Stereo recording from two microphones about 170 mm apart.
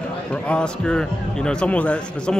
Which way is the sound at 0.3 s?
5° left (ahead or behind).